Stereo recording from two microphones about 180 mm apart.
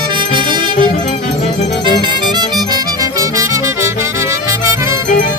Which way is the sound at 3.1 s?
15° right (ahead or behind).